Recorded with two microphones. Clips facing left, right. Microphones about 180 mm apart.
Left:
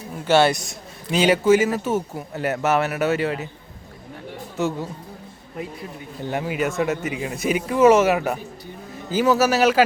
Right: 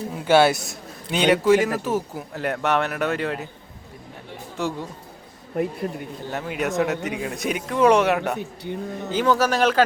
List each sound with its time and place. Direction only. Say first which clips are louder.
0.3 s a man's voice: even; 5° right (ahead or behind)
4.5 s a man's voice: left 3 dB; centre (ahead or behind)
5.5 s speech: right 7 dB; 55° right (ahead or behind)
6.3 s a man's voice: left 1 dB; centre (ahead or behind)
8.4 s speech: right 7 dB; 65° right (ahead or behind)
9.1 s speech: left 2 dB; 5° left (ahead or behind)